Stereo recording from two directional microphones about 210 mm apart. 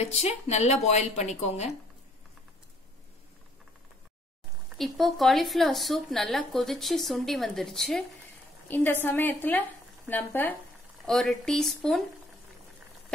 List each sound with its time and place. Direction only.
0.0 s speech: 30° left (ahead or behind)
4.7 s a woman's voice: centre (ahead or behind)